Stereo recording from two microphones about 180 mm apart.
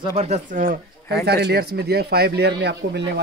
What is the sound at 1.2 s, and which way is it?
Speech, 65° right (ahead or behind).